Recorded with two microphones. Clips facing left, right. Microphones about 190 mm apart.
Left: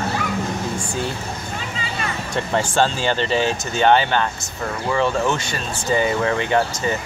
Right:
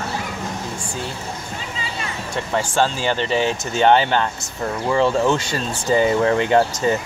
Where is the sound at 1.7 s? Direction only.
60° left (ahead or behind).